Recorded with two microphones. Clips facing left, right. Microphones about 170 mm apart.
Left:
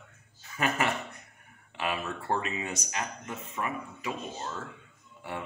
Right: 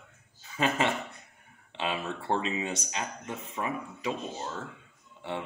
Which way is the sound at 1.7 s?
25° right (ahead or behind).